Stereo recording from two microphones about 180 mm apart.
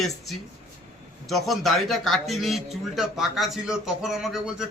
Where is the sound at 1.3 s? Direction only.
Centre (ahead or behind).